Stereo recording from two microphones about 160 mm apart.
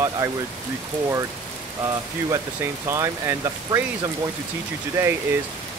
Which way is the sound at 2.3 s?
20° right (ahead or behind).